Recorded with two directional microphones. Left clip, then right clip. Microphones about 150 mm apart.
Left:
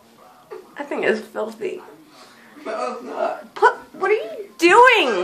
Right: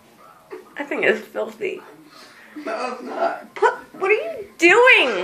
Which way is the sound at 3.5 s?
10° left (ahead or behind).